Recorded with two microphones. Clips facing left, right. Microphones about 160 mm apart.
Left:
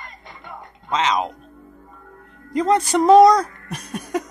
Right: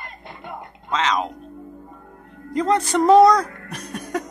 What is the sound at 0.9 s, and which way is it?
Speech, 15° left (ahead or behind).